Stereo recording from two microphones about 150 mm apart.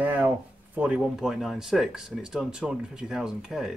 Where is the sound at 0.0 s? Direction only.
10° right (ahead or behind).